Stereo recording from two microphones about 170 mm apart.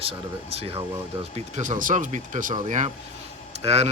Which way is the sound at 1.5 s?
45° right (ahead or behind).